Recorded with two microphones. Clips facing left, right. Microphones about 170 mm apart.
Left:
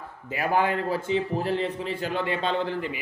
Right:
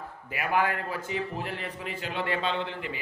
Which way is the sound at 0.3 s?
30° left (ahead or behind).